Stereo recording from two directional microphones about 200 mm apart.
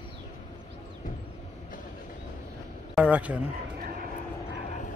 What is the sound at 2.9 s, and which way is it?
Speech, 5° right (ahead or behind).